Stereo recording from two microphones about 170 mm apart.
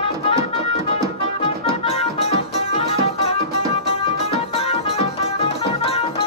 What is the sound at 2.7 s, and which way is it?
Music, 35° left (ahead or behind).